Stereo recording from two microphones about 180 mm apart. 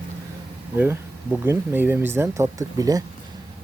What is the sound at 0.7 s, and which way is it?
Speech, 10° right (ahead or behind).